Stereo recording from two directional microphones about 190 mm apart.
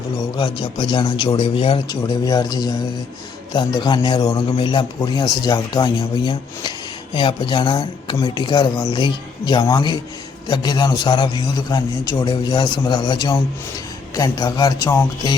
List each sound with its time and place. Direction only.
0.3 s a man's voice: 25° left (ahead or behind)